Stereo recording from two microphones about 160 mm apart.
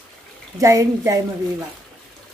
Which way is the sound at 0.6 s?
20° right (ahead or behind).